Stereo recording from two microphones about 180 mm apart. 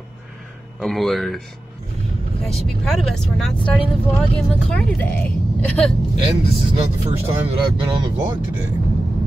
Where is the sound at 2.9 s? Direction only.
Centre (ahead or behind).